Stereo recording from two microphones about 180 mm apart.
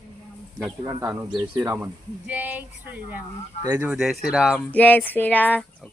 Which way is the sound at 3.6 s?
20° right (ahead or behind).